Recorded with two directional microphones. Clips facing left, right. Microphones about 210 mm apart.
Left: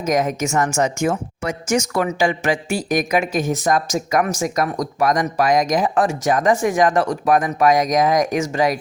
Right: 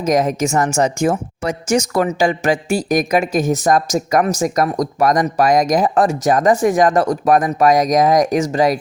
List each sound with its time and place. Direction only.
0.0 s speech: 35° right (ahead or behind)